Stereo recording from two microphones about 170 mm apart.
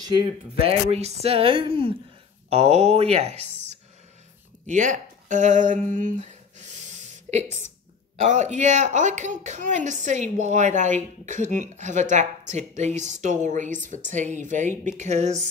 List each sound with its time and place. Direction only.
0.7 s speech: 40° right (ahead or behind)
8.2 s a woman's voice: 45° right (ahead or behind)